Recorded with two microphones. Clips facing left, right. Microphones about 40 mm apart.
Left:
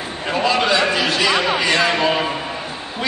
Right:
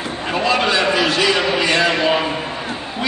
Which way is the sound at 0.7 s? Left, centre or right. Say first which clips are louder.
Right 1 dB; right.